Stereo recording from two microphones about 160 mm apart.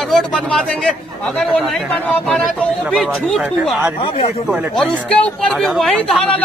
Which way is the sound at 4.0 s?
35° left (ahead or behind).